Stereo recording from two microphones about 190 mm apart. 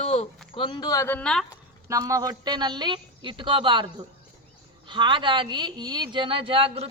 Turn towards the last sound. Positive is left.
turn(degrees=-30)  # may be behind; listen again after turning